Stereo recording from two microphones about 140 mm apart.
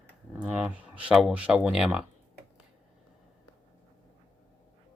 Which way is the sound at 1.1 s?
5° right (ahead or behind).